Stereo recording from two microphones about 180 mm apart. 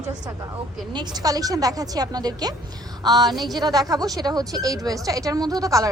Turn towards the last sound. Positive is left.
turn(degrees=-20)  # may be behind; listen again after turning